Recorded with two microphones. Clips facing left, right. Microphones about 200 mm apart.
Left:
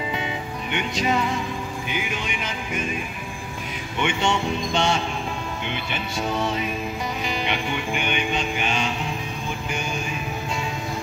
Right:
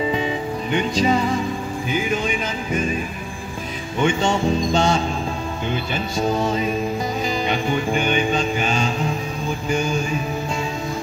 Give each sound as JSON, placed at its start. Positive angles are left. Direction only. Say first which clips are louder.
{"t": 0.1, "sound": "music", "louder": "right 6 dB", "side_deg": -35}
{"t": 4.0, "sound": "music", "louder": "right 4 dB", "side_deg": -40}